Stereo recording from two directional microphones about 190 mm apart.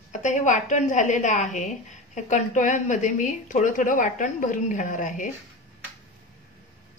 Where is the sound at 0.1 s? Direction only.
40° left (ahead or behind).